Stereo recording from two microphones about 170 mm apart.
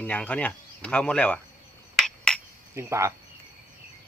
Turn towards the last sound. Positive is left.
turn(degrees=-15)  # may be behind; listen again after turning